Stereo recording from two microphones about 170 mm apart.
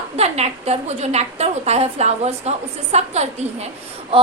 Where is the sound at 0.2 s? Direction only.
40° right (ahead or behind).